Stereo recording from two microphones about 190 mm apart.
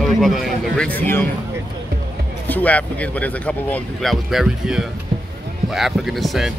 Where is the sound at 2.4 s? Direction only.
10° left (ahead or behind).